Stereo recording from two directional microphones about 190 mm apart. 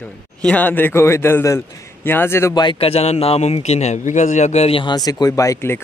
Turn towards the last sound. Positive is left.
turn(degrees=10)  # may be behind; listen again after turning